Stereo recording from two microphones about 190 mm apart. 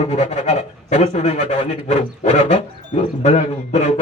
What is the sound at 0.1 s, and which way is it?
A man's voice, 35° left (ahead or behind).